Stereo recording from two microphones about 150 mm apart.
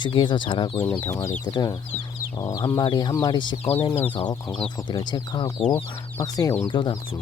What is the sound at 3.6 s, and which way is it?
Speech, 40° left (ahead or behind).